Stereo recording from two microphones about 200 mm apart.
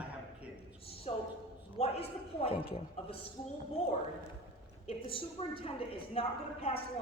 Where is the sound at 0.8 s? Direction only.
30° left (ahead or behind).